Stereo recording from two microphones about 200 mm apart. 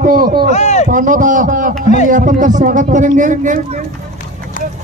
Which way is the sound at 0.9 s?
40° right (ahead or behind).